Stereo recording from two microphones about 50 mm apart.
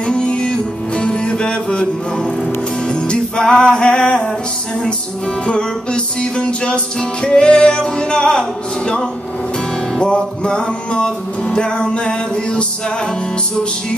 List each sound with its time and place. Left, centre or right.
0.0 s music: centre
5.4 s music: centre